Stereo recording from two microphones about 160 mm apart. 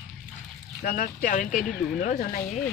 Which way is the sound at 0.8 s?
55° left (ahead or behind).